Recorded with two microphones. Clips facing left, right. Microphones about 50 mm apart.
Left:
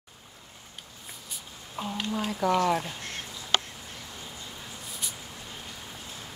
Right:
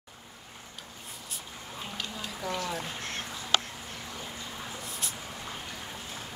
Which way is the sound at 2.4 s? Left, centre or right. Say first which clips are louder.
Left 10 dB; left.